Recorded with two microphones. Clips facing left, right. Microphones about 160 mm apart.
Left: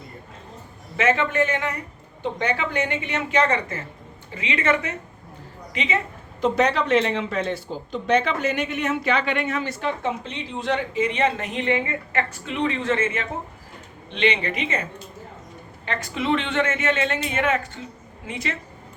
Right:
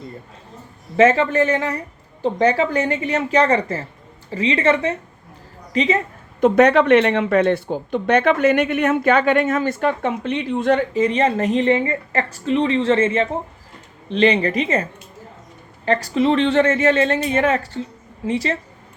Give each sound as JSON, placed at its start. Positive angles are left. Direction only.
{"t": 0.9, "sound": "a woman's voice", "side_deg": -35}
{"t": 6.4, "sound": "speech", "side_deg": -60}
{"t": 15.9, "sound": "speech", "side_deg": -35}